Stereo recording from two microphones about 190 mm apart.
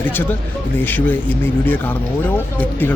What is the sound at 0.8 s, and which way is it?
Speech, 10° left (ahead or behind).